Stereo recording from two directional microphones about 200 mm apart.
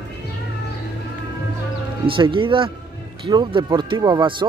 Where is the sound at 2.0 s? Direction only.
25° right (ahead or behind).